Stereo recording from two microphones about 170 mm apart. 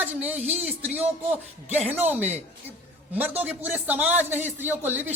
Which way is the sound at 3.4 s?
10° right (ahead or behind).